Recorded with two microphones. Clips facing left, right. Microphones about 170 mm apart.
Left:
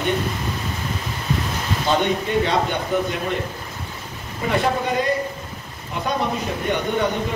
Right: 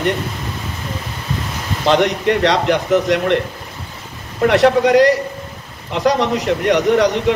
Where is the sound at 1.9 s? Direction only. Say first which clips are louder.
Right 6 dB; 90° right.